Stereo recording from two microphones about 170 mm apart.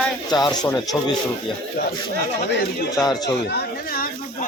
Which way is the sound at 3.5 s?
65° left (ahead or behind).